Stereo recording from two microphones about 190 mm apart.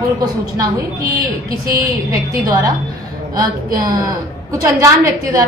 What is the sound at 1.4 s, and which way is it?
Speech, 50° right (ahead or behind).